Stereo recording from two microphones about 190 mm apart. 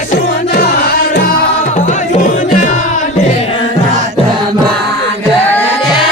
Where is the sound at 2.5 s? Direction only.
40° left (ahead or behind).